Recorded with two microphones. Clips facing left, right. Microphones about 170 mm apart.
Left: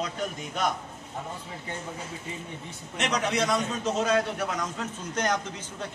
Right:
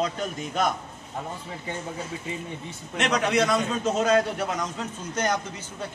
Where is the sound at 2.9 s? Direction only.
70° right (ahead or behind).